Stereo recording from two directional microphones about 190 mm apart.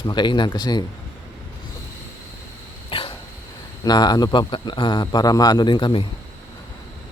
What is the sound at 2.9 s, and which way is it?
Dog, 30° left (ahead or behind).